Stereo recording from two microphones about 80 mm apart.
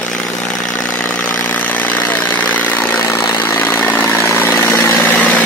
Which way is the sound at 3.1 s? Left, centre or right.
Left.